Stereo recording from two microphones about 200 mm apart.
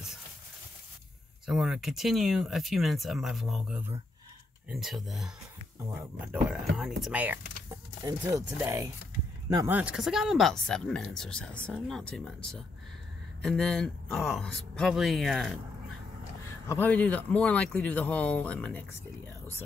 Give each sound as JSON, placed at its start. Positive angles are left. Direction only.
{"t": 1.4, "sound": "speech", "side_deg": 0}
{"t": 8.0, "sound": "speech", "side_deg": -20}
{"t": 16.6, "sound": "speech", "side_deg": 10}